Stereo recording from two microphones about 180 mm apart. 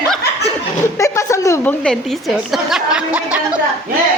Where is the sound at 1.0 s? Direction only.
15° left (ahead or behind).